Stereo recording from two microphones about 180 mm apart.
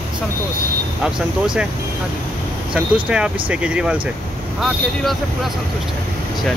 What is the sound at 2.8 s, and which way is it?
Speech, 5° right (ahead or behind).